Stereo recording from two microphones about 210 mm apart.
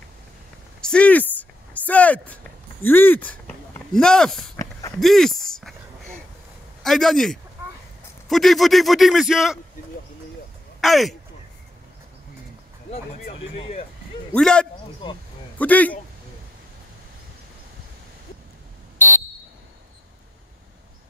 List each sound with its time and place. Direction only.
0.7 s a sound: 5° left (ahead or behind)
6.8 s speech: centre (ahead or behind)
10.8 s speech: centre (ahead or behind)
13.6 s speech: 30° left (ahead or behind)
14.3 s speech: 5° left (ahead or behind)